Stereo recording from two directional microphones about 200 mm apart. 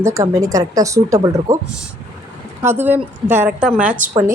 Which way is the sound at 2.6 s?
10° right (ahead or behind).